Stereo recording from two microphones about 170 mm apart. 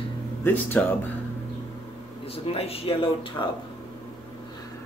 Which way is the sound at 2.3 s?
35° left (ahead or behind).